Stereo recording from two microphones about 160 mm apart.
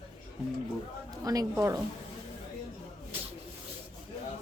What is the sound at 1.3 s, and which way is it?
Speech, 25° right (ahead or behind).